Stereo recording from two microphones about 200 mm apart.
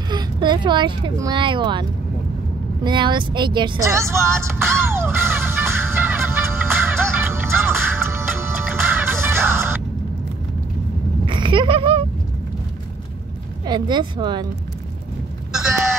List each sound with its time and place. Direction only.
0.1 s speech: 20° right (ahead or behind)
2.8 s vehicle: 25° right (ahead or behind)
11.2 s a sound: 25° right (ahead or behind)
13.7 s speech: 20° right (ahead or behind)